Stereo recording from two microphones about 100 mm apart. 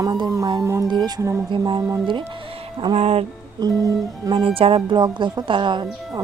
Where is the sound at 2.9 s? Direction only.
90° right.